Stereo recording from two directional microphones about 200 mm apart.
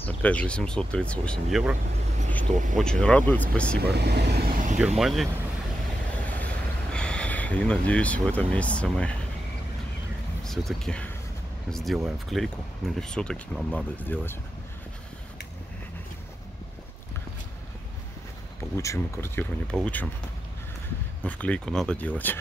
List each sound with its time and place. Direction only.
0.0 s speech: 5° left (ahead or behind)
2.5 s speech: 40° right (ahead or behind)
2.8 s speech: 5° left (ahead or behind)
3.8 s speech: 55° right (ahead or behind)
4.7 s speech: 5° right (ahead or behind)
6.3 s a sound: 5° left (ahead or behind)
10.4 s speech: centre (ahead or behind)
18.8 s speech: 15° left (ahead or behind)
21.2 s speech: 5° left (ahead or behind)